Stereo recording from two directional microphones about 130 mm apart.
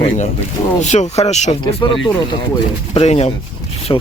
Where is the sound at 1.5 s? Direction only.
35° left (ahead or behind).